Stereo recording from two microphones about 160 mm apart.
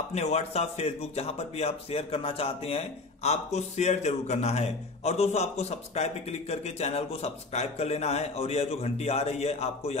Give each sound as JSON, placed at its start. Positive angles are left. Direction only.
{"t": 0.1, "sound": "speech", "side_deg": 40}